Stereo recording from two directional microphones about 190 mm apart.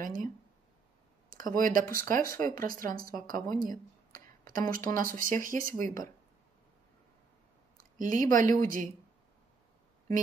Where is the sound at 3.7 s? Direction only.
45° right (ahead or behind).